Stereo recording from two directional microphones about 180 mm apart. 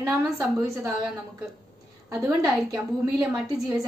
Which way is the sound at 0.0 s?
15° right (ahead or behind).